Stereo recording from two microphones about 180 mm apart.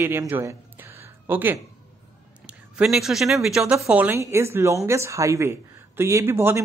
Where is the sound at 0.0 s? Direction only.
15° right (ahead or behind).